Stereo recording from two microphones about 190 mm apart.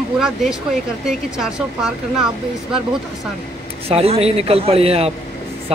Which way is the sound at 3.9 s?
30° right (ahead or behind).